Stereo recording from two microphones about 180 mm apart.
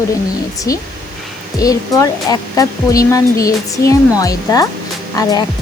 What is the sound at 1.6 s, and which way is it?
Speech, 20° left (ahead or behind).